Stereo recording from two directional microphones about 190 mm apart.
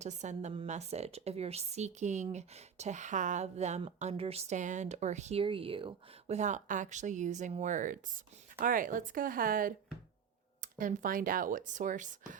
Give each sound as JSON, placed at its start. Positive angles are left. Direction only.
{"t": 0.0, "sound": "a woman's voice", "side_deg": -40}